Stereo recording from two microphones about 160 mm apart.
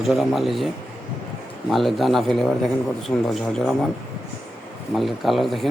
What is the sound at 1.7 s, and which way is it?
A man's voice, centre (ahead or behind).